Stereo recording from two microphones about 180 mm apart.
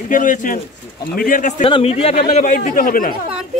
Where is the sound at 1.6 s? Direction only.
30° left (ahead or behind).